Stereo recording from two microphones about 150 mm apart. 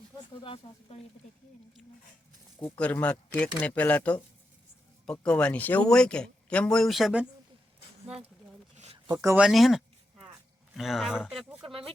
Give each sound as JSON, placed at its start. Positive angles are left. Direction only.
{"t": 0.4, "sound": "speech", "side_deg": 40}
{"t": 2.6, "sound": "speech", "side_deg": 10}
{"t": 9.0, "sound": "speech", "side_deg": -20}
{"t": 9.4, "sound": "a sound", "side_deg": 0}
{"t": 10.8, "sound": "speech", "side_deg": 0}